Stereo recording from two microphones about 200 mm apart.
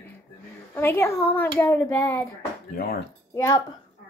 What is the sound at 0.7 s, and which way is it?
A child's voice, 10° left (ahead or behind).